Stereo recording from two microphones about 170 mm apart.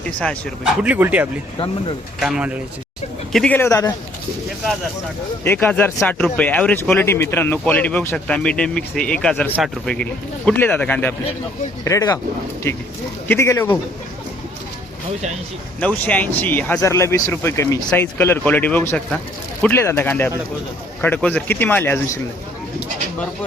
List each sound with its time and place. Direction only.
0.2 s speech: 5° left (ahead or behind)
0.8 s speech: 10° right (ahead or behind)
3.3 s speech: 5° left (ahead or behind)
5.4 s speech: 10° left (ahead or behind)
11.9 s speech: 20° left (ahead or behind)
15.8 s speech: 10° left (ahead or behind)